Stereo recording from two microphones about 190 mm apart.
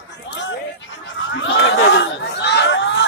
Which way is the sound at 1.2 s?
75° left (ahead or behind).